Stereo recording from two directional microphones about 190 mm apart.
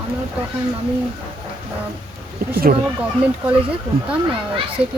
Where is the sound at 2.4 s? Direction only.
55° right (ahead or behind).